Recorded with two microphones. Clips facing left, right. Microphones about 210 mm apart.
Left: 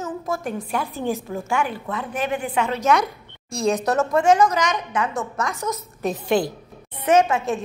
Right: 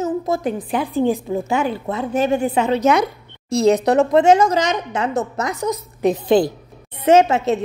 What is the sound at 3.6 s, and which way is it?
A woman's voice, 20° right (ahead or behind).